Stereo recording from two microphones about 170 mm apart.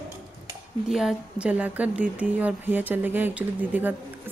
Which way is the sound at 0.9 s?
5° right (ahead or behind).